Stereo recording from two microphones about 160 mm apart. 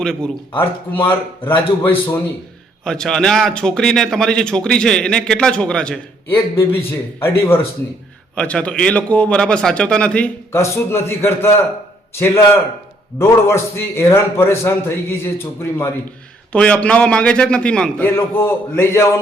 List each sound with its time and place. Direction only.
0.0 s speech: 5° left (ahead or behind)
0.9 s speech: 35° left (ahead or behind)
1.5 s speech: 10° left (ahead or behind)